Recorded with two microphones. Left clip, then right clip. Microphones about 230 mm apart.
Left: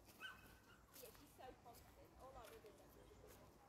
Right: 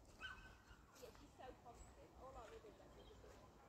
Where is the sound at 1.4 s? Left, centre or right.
Left.